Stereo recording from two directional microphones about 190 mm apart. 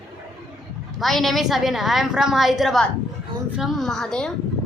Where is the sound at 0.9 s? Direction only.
Centre (ahead or behind).